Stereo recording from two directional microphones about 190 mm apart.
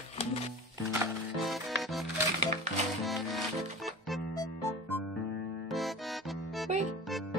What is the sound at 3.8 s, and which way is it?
Music, centre (ahead or behind).